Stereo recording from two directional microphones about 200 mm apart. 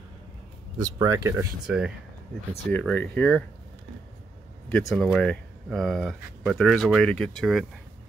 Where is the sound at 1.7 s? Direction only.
5° right (ahead or behind).